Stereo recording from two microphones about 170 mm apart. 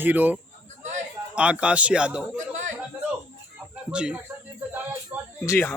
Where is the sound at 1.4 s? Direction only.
5° right (ahead or behind).